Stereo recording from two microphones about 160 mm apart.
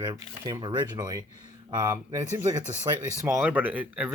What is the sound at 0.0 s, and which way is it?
Speech, 25° right (ahead or behind).